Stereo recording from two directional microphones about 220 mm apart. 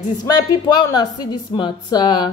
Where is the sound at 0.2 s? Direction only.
20° left (ahead or behind).